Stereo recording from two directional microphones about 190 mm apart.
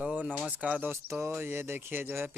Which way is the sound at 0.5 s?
5° right (ahead or behind).